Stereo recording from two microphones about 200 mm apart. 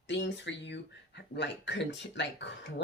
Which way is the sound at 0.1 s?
60° left (ahead or behind).